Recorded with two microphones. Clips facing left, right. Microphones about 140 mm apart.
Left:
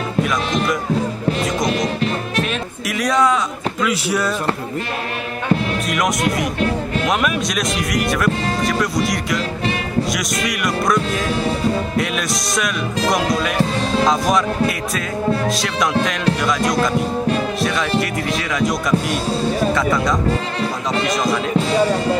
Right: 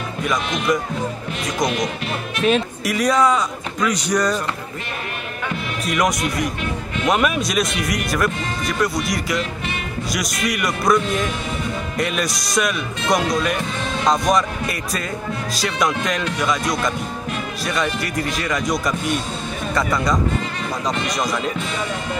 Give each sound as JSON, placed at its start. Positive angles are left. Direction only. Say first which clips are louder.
{"t": 2.9, "sound": "speech", "louder": "even", "side_deg": 0}
{"t": 5.9, "sound": "speech", "louder": "right 1 dB", "side_deg": 0}
{"t": 14.0, "sound": "speech", "louder": "right 1 dB", "side_deg": 0}
{"t": 15.5, "sound": "speech", "louder": "left 2 dB", "side_deg": 0}
{"t": 18.0, "sound": "speech", "louder": "left 2 dB", "side_deg": 0}
{"t": 21.5, "sound": "speech", "louder": "left 9 dB", "side_deg": 35}